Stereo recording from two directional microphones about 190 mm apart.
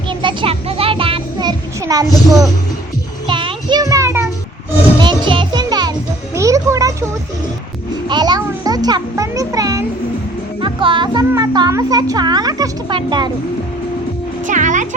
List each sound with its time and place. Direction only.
0.1 s music: 25° right (ahead or behind)
3.2 s music: 25° right (ahead or behind)
8.0 s music: 25° right (ahead or behind)
10.6 s a child's voice: 25° right (ahead or behind)
14.4 s speech: 40° right (ahead or behind)